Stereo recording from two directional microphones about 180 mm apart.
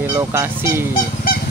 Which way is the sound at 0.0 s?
15° right (ahead or behind).